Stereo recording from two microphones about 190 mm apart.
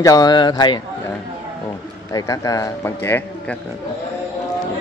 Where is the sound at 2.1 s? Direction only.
20° left (ahead or behind).